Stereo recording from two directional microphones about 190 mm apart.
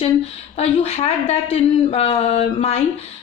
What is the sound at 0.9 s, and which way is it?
A woman's voice, 35° left (ahead or behind).